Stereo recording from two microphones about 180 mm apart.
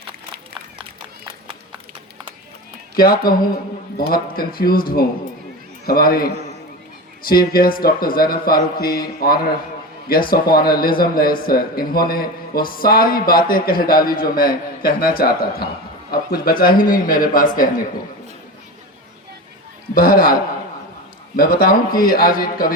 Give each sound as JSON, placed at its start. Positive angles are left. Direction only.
{"t": 2.9, "sound": "a man's voice", "side_deg": 55}
{"t": 19.9, "sound": "a man's voice", "side_deg": 50}